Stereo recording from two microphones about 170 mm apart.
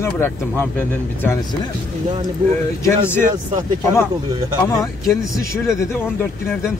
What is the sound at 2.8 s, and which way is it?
Speech, 15° left (ahead or behind).